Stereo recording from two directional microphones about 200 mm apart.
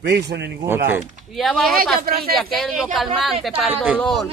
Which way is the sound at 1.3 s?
Centre (ahead or behind).